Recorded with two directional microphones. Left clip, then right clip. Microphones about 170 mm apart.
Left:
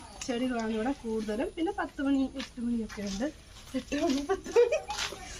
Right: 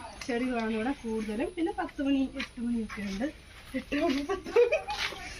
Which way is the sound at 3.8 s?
5° left (ahead or behind).